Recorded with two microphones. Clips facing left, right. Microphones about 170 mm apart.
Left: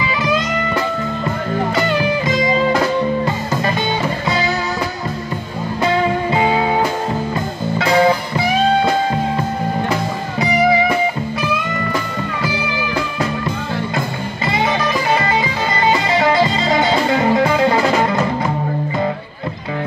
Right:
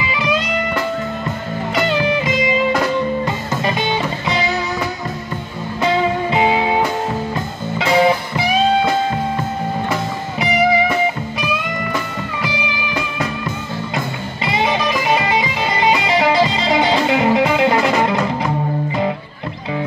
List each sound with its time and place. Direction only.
6.3 s music: 15° right (ahead or behind)
7.8 s music: 20° right (ahead or behind)
15.1 s music: 10° right (ahead or behind)